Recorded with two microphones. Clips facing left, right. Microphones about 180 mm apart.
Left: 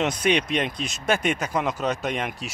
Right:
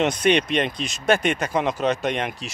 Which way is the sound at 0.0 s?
Centre (ahead or behind).